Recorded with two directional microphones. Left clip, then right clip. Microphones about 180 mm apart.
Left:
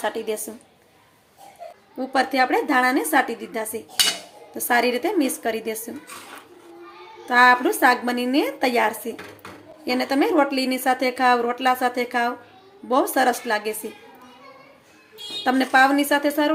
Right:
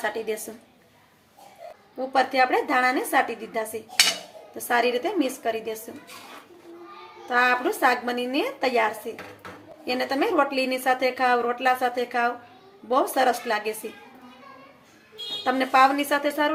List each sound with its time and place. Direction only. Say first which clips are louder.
0.0 s a woman's voice: left 2 dB; 15° left (ahead or behind)
2.0 s a woman's voice: left 1 dB; 15° left (ahead or behind)
7.3 s a woman's voice: left 6 dB; 20° left (ahead or behind)
15.4 s a woman's voice: left 2 dB; 15° left (ahead or behind)